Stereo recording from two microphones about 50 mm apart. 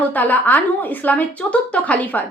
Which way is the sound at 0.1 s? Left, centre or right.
Left.